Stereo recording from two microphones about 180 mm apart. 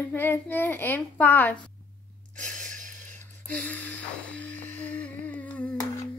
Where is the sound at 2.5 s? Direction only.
45° right (ahead or behind).